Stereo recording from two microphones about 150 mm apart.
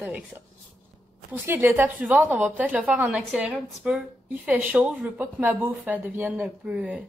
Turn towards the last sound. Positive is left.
turn(degrees=-5)  # may be behind; listen again after turning